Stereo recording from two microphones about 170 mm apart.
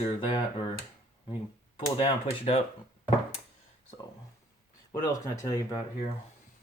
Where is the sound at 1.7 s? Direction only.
30° left (ahead or behind).